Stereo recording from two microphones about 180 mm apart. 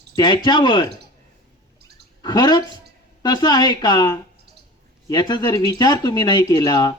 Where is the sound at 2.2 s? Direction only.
25° left (ahead or behind).